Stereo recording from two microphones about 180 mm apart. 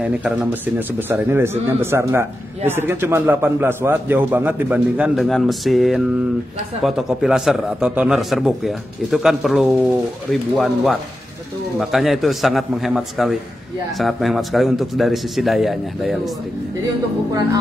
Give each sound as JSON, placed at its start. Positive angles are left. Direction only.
{"t": 0.0, "sound": "a man's voice", "side_deg": -5}